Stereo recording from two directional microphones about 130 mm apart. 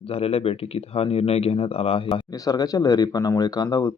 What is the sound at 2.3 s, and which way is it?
Speech, 30° left (ahead or behind).